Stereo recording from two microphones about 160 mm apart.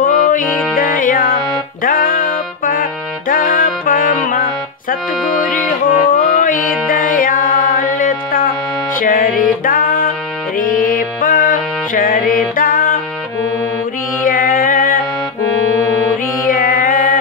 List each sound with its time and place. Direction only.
0.0 s music: 60° left (ahead or behind)
6.0 s music: 60° left (ahead or behind)
14.2 s music: 60° left (ahead or behind)
16.4 s music: 60° left (ahead or behind)